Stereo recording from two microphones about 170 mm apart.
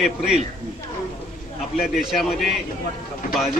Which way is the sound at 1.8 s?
Centre (ahead or behind).